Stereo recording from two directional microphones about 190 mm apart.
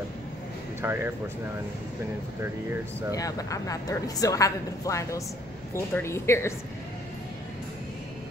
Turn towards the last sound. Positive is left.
turn(degrees=15)  # may be behind; listen again after turning